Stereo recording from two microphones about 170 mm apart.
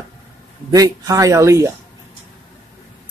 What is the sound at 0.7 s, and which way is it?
Speech, 20° right (ahead or behind).